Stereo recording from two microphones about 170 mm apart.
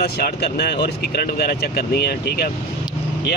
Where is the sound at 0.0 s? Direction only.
70° left (ahead or behind).